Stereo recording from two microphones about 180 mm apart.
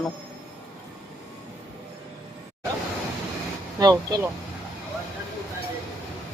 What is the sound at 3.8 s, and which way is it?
Speech, 20° right (ahead or behind).